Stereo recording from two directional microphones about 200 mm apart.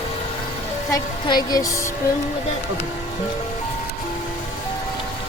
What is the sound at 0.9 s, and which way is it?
Speech, 20° left (ahead or behind).